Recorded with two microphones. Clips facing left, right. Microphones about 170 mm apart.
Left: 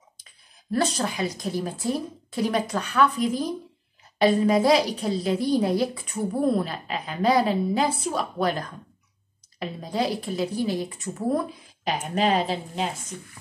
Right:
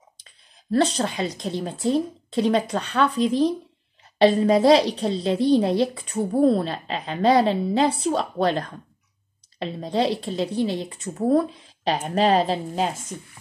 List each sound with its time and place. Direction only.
0.7 s a woman's voice: 25° right (ahead or behind)